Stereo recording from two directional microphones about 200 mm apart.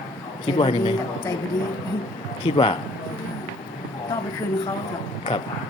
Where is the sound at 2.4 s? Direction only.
25° left (ahead or behind).